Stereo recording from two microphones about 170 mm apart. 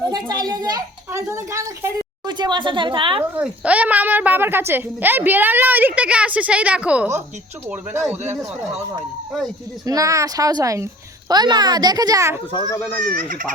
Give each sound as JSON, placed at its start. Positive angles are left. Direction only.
{"t": 0.0, "sound": "a child's voice", "side_deg": -25}
{"t": 3.3, "sound": "a woman's voice", "side_deg": -10}
{"t": 9.8, "sound": "a child's voice", "side_deg": -20}
{"t": 12.5, "sound": "a child's voice", "side_deg": 25}
{"t": 13.0, "sound": "speech", "side_deg": -55}